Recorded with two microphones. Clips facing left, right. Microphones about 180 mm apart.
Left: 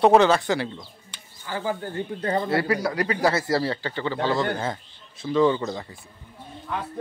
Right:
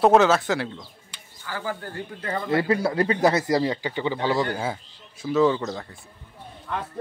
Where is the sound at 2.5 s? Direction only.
20° right (ahead or behind).